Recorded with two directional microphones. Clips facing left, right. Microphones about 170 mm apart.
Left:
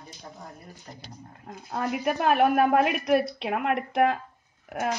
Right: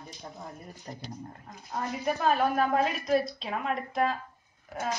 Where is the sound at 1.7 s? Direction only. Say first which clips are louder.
Left 4 dB; 65° left (ahead or behind).